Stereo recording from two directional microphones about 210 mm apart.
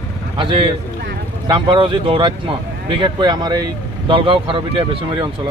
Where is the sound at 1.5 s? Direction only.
25° right (ahead or behind).